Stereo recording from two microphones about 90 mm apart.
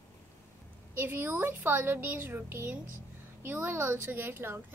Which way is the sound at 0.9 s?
25° right (ahead or behind).